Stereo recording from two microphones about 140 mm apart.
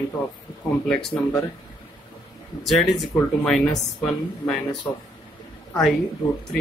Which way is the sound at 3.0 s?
Centre (ahead or behind).